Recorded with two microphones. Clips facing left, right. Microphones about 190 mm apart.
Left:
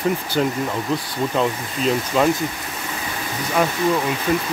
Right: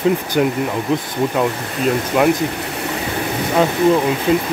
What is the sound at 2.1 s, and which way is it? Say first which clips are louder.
Speech: right 3 dB; 10° right (ahead or behind).